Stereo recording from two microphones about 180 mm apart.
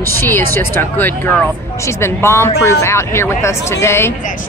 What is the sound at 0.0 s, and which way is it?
A woman's voice, 10° left (ahead or behind).